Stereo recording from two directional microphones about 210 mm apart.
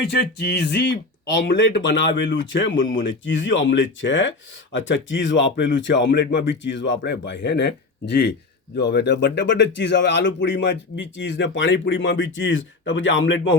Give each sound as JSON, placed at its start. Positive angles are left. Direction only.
{"t": 0.1, "sound": "speech", "side_deg": 50}